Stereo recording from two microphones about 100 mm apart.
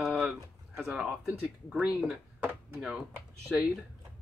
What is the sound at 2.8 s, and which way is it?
Speech, 5° right (ahead or behind).